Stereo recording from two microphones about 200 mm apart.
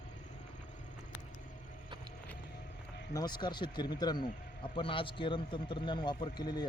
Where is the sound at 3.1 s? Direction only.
20° left (ahead or behind).